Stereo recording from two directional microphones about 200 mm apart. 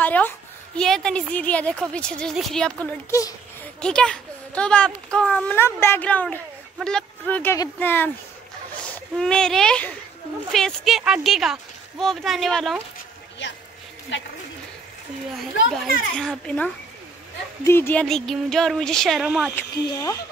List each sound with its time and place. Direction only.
0.0 s a sound: 10° left (ahead or behind)
0.7 s a child's voice: 5° left (ahead or behind)
13.4 s speech: 65° left (ahead or behind)
15.7 s a child's voice: 5° left (ahead or behind)
19.5 s speech: 15° left (ahead or behind)